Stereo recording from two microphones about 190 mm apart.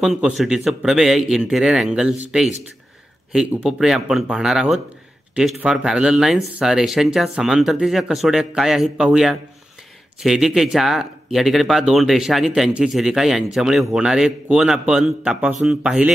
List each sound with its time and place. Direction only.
0.0 s speech: centre (ahead or behind)
3.3 s speech: 5° right (ahead or behind)